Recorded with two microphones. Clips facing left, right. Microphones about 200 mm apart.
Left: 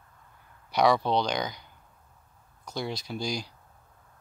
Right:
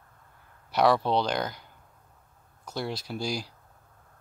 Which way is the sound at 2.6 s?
5° right (ahead or behind).